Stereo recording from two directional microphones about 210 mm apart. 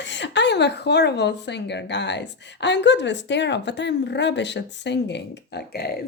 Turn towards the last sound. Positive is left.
turn(degrees=45)  # may be behind; listen again after turning